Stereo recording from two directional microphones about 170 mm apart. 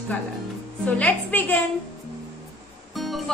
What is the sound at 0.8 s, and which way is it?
Speech, 10° left (ahead or behind).